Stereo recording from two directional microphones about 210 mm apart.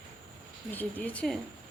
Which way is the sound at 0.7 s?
10° left (ahead or behind).